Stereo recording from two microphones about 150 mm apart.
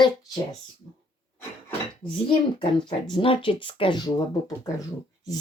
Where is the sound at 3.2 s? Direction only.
35° left (ahead or behind).